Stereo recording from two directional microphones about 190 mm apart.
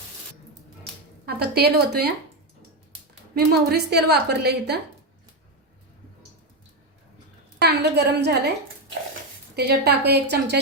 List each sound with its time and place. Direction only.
1.2 s a woman's voice: 55° right (ahead or behind)
3.3 s a woman's voice: 60° right (ahead or behind)
7.6 s a woman's voice: 60° right (ahead or behind)
9.6 s a woman's voice: 60° right (ahead or behind)